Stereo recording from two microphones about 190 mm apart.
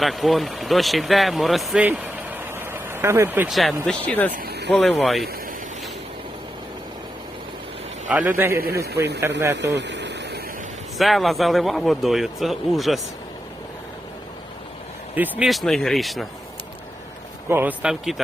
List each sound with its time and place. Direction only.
0.0 s speech: centre (ahead or behind)
4.4 s vehicle: 60° right (ahead or behind)
4.7 s a man's voice: centre (ahead or behind)
8.1 s a man's voice: 10° right (ahead or behind)
8.6 s a man's voice: 55° right (ahead or behind)
9.2 s a man's voice: 15° right (ahead or behind)
9.6 s a sound: 65° right (ahead or behind)
10.9 s a man's voice: centre (ahead or behind)
15.1 s a man's voice: 5° right (ahead or behind)
17.5 s a man's voice: 10° right (ahead or behind)